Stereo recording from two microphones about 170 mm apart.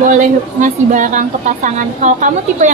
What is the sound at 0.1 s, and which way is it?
A woman's voice, 50° right (ahead or behind).